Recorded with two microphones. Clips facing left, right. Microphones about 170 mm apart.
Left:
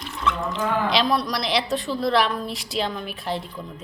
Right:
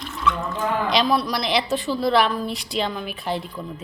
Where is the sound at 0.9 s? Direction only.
Centre (ahead or behind).